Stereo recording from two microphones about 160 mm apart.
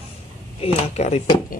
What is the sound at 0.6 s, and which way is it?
Speech, 45° left (ahead or behind).